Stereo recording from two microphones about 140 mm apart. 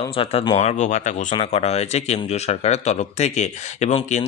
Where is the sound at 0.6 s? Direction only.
55° left (ahead or behind).